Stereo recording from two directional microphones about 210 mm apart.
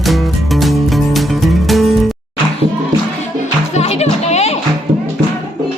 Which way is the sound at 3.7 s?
30° left (ahead or behind).